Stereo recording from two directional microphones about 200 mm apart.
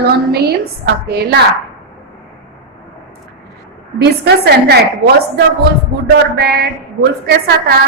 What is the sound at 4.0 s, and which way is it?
Speech, 55° right (ahead or behind).